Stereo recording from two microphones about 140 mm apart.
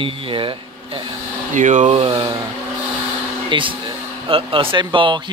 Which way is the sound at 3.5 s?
35° right (ahead or behind).